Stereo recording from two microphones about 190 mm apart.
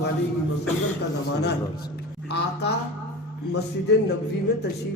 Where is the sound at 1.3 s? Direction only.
60° left (ahead or behind).